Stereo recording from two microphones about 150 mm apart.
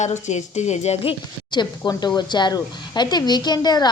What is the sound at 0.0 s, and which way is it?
Speech, 50° left (ahead or behind).